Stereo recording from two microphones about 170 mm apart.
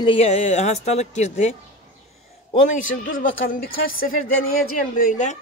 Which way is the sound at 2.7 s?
50° left (ahead or behind).